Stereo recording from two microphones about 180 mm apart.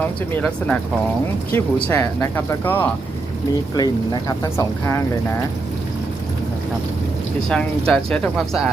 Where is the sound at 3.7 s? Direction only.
20° left (ahead or behind).